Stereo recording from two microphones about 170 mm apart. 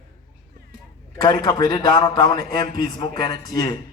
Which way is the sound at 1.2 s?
25° left (ahead or behind).